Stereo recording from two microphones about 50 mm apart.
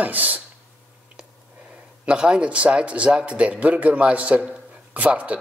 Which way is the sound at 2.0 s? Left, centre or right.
Right.